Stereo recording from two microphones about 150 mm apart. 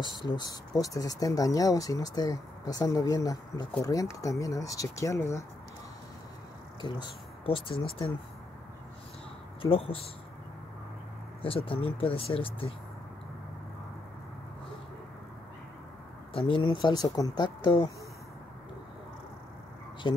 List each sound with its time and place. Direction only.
0.0 s speech: 30° left (ahead or behind)
6.8 s speech: 30° left (ahead or behind)
9.6 s speech: 40° left (ahead or behind)
11.4 s speech: 35° left (ahead or behind)
16.4 s speech: 35° left (ahead or behind)